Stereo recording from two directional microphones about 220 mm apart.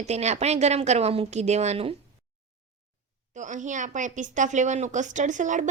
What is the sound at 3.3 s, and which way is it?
A woman's voice, 35° right (ahead or behind).